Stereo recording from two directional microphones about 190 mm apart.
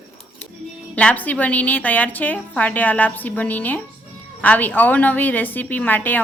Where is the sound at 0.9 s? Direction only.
10° left (ahead or behind).